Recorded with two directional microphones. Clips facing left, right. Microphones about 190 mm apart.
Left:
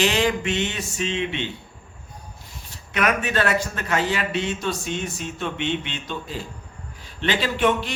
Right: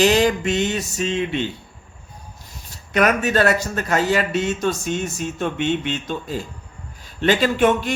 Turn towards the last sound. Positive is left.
turn(degrees=-45)  # may be behind; listen again after turning